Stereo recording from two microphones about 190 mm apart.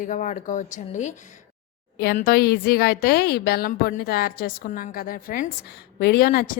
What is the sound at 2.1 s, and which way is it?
A woman's voice, 50° left (ahead or behind).